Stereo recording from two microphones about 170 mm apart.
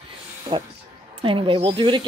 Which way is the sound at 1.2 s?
30° right (ahead or behind).